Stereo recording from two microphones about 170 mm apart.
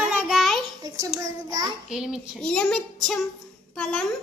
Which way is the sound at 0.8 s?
20° right (ahead or behind).